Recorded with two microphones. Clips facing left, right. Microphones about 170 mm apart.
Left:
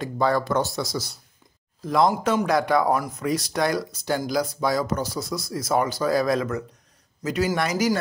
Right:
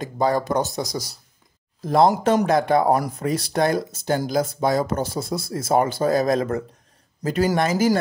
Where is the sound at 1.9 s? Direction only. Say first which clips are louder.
Right 4 dB; 30° right (ahead or behind).